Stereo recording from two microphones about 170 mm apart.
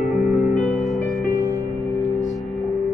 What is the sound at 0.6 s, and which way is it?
Music, centre (ahead or behind).